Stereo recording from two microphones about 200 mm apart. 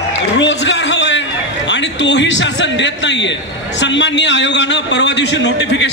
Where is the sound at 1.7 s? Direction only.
60° left (ahead or behind).